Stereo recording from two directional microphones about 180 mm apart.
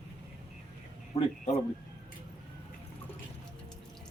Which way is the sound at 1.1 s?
35° left (ahead or behind).